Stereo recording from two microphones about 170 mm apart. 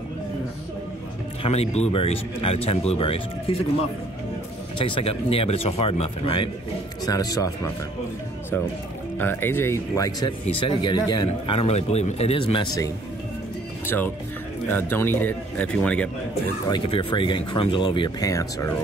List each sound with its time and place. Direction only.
1.4 s speech: 35° left (ahead or behind)
4.7 s speech: 30° left (ahead or behind)
7.1 s speech: 20° left (ahead or behind)
9.2 s speech: 10° left (ahead or behind)
10.4 s speech: 30° left (ahead or behind)
11.2 s speech: 35° left (ahead or behind)
13.8 s speech: 10° left (ahead or behind)
16.6 s speech: 30° left (ahead or behind)